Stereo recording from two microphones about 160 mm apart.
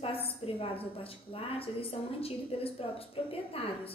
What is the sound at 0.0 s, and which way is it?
A woman's voice, 35° left (ahead or behind).